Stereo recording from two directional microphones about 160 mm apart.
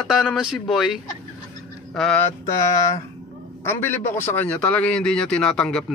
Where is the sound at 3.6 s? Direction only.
15° left (ahead or behind).